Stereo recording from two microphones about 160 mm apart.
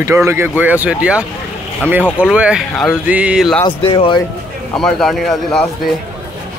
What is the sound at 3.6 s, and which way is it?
Speech, 35° left (ahead or behind).